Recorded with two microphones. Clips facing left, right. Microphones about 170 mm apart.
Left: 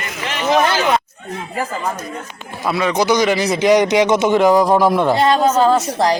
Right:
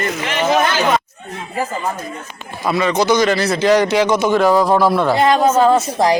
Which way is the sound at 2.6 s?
5° left (ahead or behind).